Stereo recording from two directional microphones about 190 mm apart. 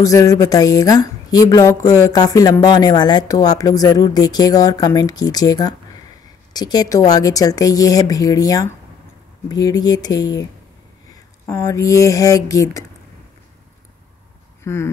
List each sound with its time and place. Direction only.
0.0 s a woman's voice: 15° left (ahead or behind)
11.4 s speech: 15° left (ahead or behind)
14.6 s speech: 15° left (ahead or behind)